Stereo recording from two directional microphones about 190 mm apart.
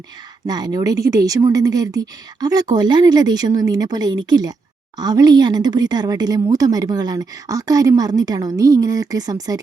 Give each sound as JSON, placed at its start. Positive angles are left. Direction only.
{"t": 0.4, "sound": "speech", "side_deg": -20}